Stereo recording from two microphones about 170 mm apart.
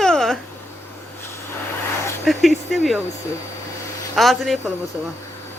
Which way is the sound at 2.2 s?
Centre (ahead or behind).